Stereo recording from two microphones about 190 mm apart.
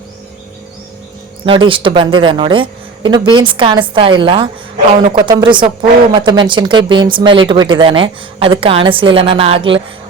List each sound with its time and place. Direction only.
1.5 s speech: 25° right (ahead or behind)